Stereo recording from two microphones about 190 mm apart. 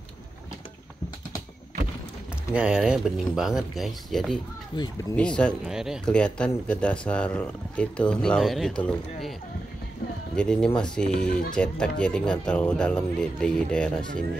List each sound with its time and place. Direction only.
2.5 s speech: 5° right (ahead or behind)
4.7 s speech: 25° left (ahead or behind)
5.1 s speech: 5° left (ahead or behind)
10.3 s speech: 5° left (ahead or behind)